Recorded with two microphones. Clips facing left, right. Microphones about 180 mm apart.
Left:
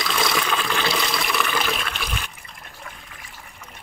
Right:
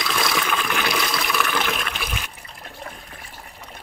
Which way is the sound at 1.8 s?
5° right (ahead or behind).